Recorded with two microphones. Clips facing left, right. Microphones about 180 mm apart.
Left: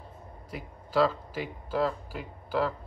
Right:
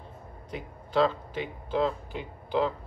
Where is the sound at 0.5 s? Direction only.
5° left (ahead or behind).